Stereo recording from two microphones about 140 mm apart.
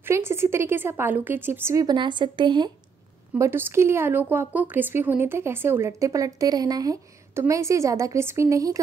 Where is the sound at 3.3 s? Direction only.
20° right (ahead or behind).